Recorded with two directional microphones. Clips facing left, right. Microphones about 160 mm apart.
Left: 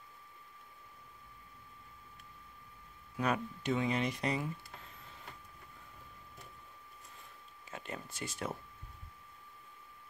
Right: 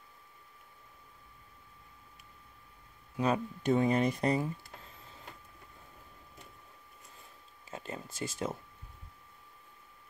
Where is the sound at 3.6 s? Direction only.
45° right (ahead or behind).